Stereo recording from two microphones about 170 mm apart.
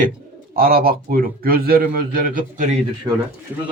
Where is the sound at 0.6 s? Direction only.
60° right (ahead or behind).